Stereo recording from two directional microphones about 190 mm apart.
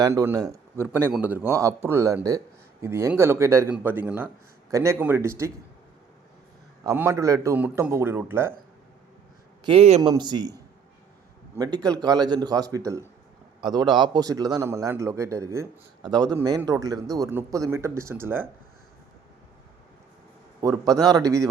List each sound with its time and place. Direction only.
0.0 s a man's voice: 15° right (ahead or behind)
6.8 s a man's voice: 15° right (ahead or behind)
9.6 s a man's voice: 30° right (ahead or behind)
11.5 s a man's voice: 20° right (ahead or behind)
20.6 s a man's voice: 20° right (ahead or behind)